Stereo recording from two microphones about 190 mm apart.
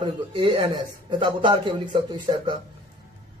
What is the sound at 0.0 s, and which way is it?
A man's voice, 25° right (ahead or behind).